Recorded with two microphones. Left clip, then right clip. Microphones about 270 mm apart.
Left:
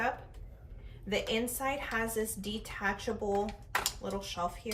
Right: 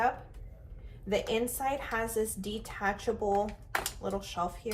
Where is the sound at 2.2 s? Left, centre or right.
Centre.